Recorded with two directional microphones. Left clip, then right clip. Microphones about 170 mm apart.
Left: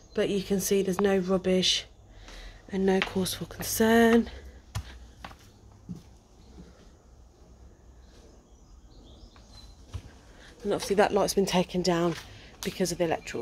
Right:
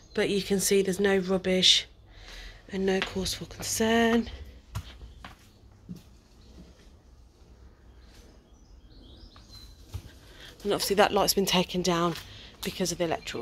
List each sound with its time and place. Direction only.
0.1 s speech: centre (ahead or behind); by 3.2 s 15° left (ahead or behind)
3.2 s speech: 25° left (ahead or behind)
10.4 s speech: 5° right (ahead or behind); by 13.4 s 10° left (ahead or behind)